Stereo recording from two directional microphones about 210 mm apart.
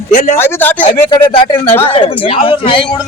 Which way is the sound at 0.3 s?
10° left (ahead or behind).